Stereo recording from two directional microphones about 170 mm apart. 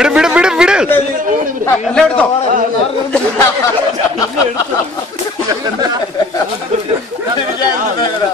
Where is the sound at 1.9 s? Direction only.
5° left (ahead or behind).